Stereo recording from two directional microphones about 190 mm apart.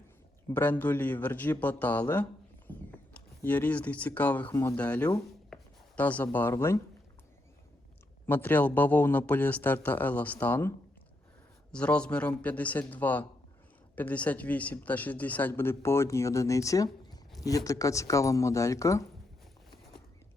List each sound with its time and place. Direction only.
0.5 s speech: 10° left (ahead or behind)
8.3 s speech: 10° left (ahead or behind)
11.7 s speech: 5° left (ahead or behind)